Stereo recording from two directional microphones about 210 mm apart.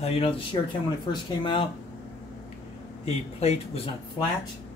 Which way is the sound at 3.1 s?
30° left (ahead or behind).